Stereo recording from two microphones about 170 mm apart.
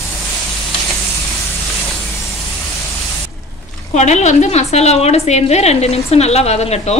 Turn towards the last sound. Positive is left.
turn(degrees=40)  # may be behind; listen again after turning